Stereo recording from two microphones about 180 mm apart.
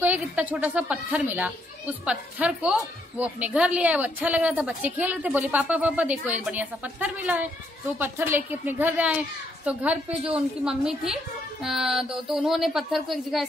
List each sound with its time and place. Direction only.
0.0 s a woman's voice: 10° right (ahead or behind)